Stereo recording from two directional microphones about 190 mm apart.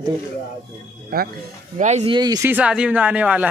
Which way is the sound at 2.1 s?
20° right (ahead or behind).